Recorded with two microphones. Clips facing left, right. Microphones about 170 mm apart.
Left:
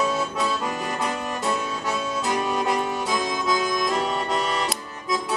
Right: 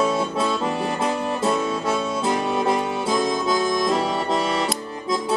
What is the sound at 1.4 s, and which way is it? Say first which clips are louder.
Music: right 5 dB; 25° right (ahead or behind).